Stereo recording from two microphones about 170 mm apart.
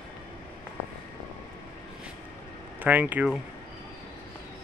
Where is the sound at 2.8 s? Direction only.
10° right (ahead or behind).